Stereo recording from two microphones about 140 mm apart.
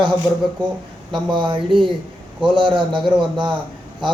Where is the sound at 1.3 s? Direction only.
35° right (ahead or behind).